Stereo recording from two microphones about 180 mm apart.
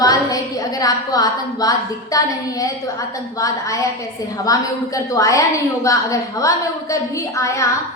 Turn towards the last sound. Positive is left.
turn(degrees=20)  # may be behind; listen again after turning